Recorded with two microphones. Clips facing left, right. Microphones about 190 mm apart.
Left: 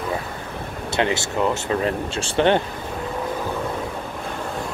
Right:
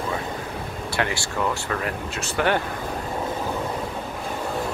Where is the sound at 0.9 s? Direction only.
20° left (ahead or behind).